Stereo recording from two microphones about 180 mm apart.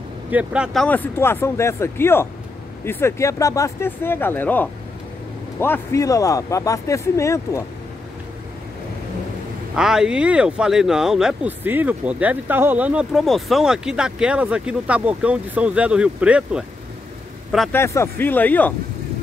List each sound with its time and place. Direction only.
0.3 s speech: 5° right (ahead or behind)
0.8 s speech: 10° left (ahead or behind)
9.8 s speech: 5° right (ahead or behind)
17.7 s speech: 15° left (ahead or behind)